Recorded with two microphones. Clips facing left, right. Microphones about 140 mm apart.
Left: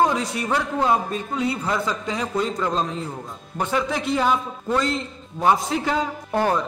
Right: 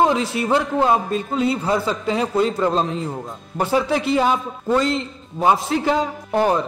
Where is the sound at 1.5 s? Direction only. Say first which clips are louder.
Right 4 dB; 30° right (ahead or behind).